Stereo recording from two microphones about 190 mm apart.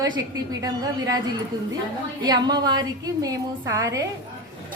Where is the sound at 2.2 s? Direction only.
20° right (ahead or behind).